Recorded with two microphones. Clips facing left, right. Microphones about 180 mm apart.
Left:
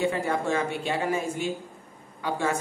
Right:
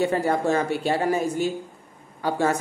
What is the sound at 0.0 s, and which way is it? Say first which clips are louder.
A woman's voice: right 4 dB; 40° right (ahead or behind).